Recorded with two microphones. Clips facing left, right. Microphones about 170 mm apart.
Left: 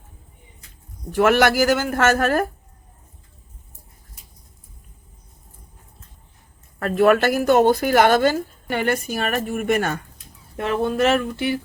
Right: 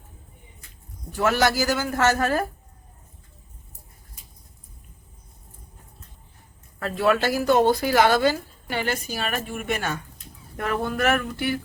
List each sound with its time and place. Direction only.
1.1 s a man's voice: 65° left (ahead or behind)
6.7 s speech: 55° left (ahead or behind)
10.6 s a sound: 25° left (ahead or behind)